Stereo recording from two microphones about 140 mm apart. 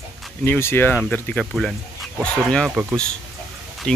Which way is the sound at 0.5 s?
15° left (ahead or behind).